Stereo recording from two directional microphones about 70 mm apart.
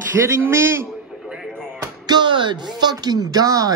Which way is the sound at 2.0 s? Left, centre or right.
Right.